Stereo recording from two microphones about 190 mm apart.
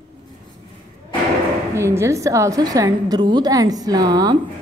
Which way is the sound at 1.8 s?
15° right (ahead or behind).